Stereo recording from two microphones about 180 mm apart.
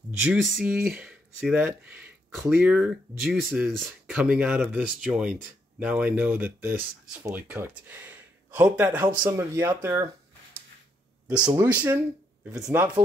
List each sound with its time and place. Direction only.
0.2 s speech: centre (ahead or behind)
11.2 s speech: 5° right (ahead or behind)